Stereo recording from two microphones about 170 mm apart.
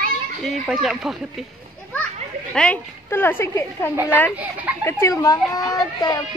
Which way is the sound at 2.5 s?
10° left (ahead or behind).